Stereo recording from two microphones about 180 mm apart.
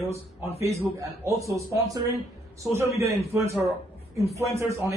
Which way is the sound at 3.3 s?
15° right (ahead or behind).